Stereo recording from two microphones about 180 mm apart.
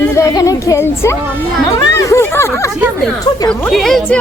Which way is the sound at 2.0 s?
15° left (ahead or behind).